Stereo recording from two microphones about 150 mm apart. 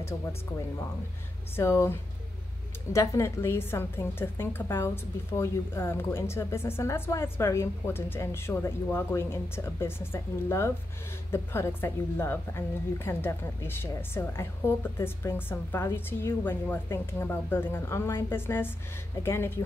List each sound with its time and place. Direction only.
0.0 s a woman's voice: 15° left (ahead or behind)